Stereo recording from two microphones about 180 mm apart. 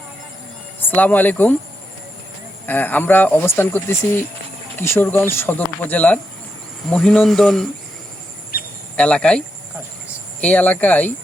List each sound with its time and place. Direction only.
0.9 s speech: 10° left (ahead or behind)
2.6 s speech: 10° left (ahead or behind)
9.0 s speech: 5° left (ahead or behind)
10.4 s speech: 10° left (ahead or behind)